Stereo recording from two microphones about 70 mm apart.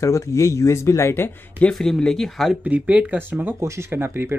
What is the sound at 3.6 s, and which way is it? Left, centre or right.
Speech, right.